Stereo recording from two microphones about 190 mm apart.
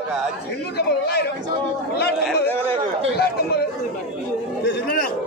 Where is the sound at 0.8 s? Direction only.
55° left (ahead or behind).